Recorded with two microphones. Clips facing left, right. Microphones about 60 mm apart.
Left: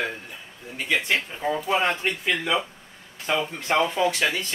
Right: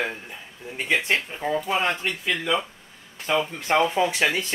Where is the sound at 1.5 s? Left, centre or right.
Centre.